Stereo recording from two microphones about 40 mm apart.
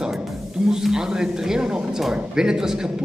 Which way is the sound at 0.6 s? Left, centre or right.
Centre.